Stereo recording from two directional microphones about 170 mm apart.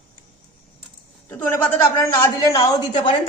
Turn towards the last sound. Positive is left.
turn(degrees=30)  # may be behind; listen again after turning